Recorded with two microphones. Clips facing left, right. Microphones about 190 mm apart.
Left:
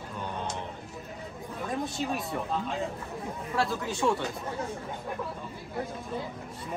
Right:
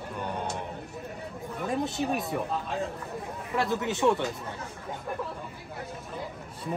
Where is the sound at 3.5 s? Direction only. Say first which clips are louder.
Right 2 dB; 20° right (ahead or behind).